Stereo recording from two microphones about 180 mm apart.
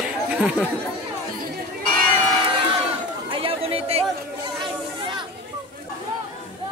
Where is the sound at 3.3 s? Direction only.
30° right (ahead or behind).